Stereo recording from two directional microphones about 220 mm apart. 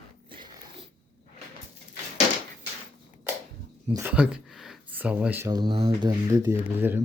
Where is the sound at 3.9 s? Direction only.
5° right (ahead or behind).